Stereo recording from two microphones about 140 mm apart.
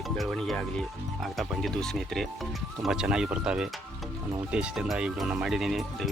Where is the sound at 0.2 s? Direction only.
Centre (ahead or behind).